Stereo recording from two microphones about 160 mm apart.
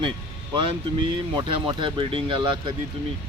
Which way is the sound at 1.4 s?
30° right (ahead or behind).